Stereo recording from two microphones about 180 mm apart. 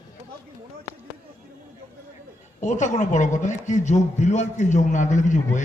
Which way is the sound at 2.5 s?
40° left (ahead or behind).